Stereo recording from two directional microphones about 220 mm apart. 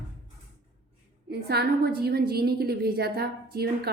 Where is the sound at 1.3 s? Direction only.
45° right (ahead or behind).